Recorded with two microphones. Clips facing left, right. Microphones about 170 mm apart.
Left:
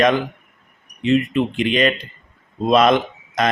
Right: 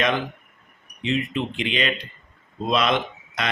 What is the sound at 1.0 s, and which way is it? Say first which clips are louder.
Speech: left 8 dB; 50° left (ahead or behind).